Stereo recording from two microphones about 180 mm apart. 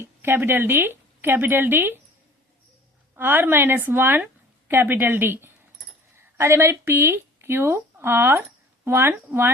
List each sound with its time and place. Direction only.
0.0 s speech: 10° right (ahead or behind)
3.2 s speech: 10° right (ahead or behind)